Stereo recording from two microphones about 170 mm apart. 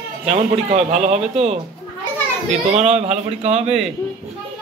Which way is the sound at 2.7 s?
40° right (ahead or behind).